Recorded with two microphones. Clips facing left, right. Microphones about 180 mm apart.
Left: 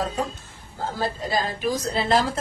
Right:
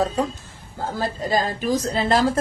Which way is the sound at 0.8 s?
45° right (ahead or behind).